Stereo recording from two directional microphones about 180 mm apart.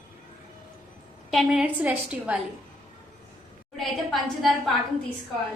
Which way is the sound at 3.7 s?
Centre (ahead or behind).